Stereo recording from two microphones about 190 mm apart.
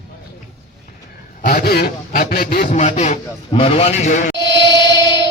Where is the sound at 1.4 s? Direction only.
55° left (ahead or behind).